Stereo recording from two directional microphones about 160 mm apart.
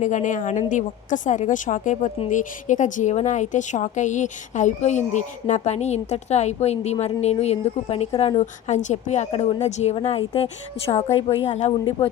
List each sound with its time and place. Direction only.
0.0 s a woman's voice: 50° left (ahead or behind)